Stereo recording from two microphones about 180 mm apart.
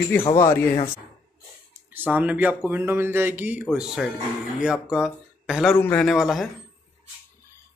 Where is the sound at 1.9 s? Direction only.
10° right (ahead or behind).